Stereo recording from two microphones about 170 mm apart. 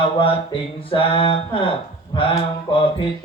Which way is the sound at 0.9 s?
30° left (ahead or behind).